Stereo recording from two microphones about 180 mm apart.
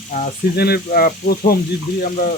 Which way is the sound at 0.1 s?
40° left (ahead or behind).